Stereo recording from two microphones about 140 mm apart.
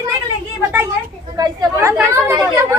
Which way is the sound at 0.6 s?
15° right (ahead or behind).